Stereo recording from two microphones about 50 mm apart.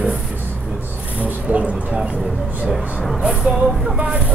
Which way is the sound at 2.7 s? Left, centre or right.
Centre.